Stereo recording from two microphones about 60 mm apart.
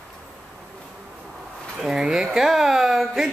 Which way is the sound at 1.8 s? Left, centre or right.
Centre.